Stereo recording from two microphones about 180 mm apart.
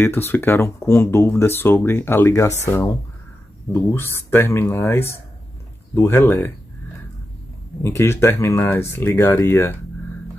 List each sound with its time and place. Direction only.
0.0 s speech: 15° left (ahead or behind)
7.8 s speech: 15° left (ahead or behind)